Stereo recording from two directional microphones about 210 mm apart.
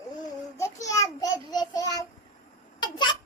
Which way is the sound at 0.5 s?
15° left (ahead or behind).